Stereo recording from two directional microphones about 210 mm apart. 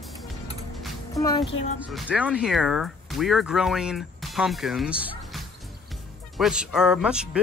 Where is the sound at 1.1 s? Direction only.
15° left (ahead or behind).